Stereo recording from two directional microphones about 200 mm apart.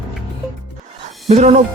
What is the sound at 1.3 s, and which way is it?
Speech, 35° right (ahead or behind).